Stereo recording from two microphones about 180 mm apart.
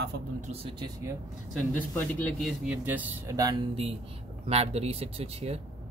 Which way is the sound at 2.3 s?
5° right (ahead or behind).